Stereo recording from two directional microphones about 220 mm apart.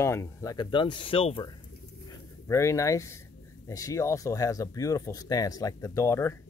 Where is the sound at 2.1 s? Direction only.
15° left (ahead or behind).